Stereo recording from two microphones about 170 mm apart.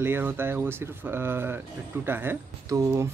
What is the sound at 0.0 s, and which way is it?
Speech, 10° right (ahead or behind).